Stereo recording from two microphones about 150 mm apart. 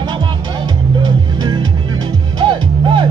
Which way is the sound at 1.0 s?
30° right (ahead or behind).